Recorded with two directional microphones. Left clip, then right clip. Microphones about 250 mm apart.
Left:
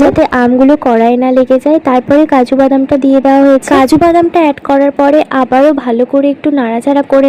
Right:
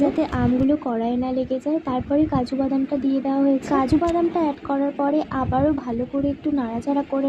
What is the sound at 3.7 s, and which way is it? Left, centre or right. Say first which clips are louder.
Speech: left 13 dB; left.